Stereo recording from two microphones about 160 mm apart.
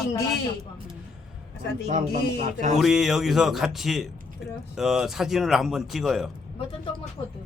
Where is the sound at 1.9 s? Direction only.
55° right (ahead or behind).